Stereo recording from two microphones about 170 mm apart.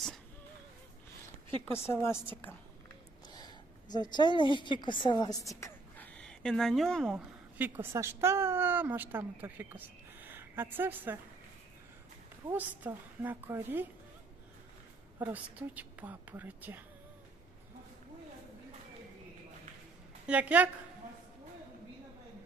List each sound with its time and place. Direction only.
1.9 s a woman's voice: 15° left (ahead or behind)
3.2 s a sound: 25° left (ahead or behind)
4.1 s a woman's voice: 25° left (ahead or behind)
6.1 s speech: 5° left (ahead or behind)
7.6 s a woman's voice: 15° right (ahead or behind)
12.5 s a woman's voice: 10° right (ahead or behind)
15.2 s a woman's voice: 10° right (ahead or behind)
20.2 s a woman's voice: 10° right (ahead or behind)